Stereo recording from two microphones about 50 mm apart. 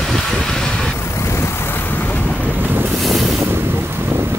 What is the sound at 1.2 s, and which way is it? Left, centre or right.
Vehicle, left.